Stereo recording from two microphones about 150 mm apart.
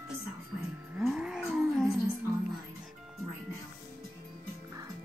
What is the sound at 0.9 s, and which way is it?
Livestock, 5° right (ahead or behind).